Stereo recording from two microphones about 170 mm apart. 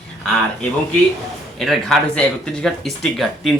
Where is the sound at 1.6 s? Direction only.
Centre (ahead or behind).